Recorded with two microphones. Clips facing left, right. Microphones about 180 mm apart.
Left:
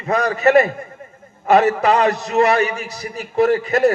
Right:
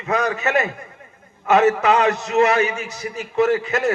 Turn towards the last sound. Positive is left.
turn(degrees=35)  # may be behind; listen again after turning